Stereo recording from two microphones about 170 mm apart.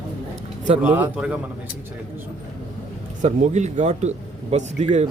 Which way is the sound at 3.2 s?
45° right (ahead or behind).